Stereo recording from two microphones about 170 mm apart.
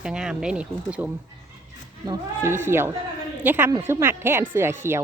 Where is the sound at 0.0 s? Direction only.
5° right (ahead or behind).